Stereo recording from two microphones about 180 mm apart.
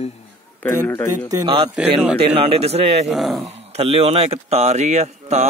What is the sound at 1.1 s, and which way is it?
Speech, 20° right (ahead or behind).